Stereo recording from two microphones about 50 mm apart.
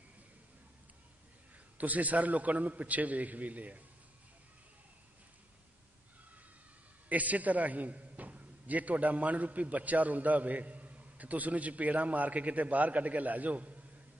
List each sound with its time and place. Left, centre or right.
1.8 s a man's voice: right
7.1 s a man's voice: right